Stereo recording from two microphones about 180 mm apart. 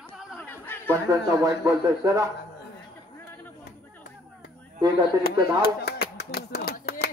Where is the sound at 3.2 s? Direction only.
10° left (ahead or behind).